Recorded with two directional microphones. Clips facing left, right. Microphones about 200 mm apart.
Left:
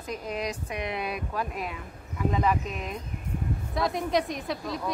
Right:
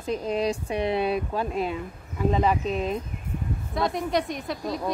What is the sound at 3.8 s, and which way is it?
Speech, centre (ahead or behind).